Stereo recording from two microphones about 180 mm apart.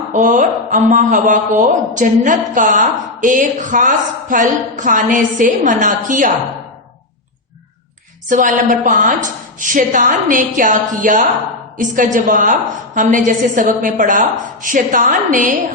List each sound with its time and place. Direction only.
0.1 s speech: 45° right (ahead or behind)
8.3 s speech: 45° right (ahead or behind)